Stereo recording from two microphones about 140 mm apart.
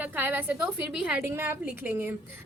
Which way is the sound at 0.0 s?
15° right (ahead or behind).